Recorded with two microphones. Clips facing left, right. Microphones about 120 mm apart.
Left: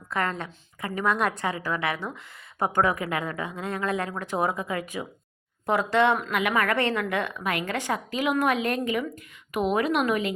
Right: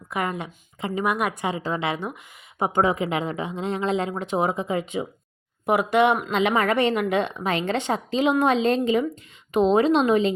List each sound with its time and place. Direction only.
0.1 s a woman's voice: 15° right (ahead or behind)
6.3 s a woman's voice: 25° right (ahead or behind)